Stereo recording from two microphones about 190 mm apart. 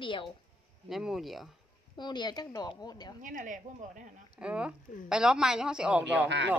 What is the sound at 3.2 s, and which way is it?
Speech, 45° right (ahead or behind).